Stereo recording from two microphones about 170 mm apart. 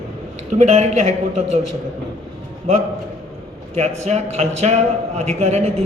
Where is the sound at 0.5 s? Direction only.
45° right (ahead or behind).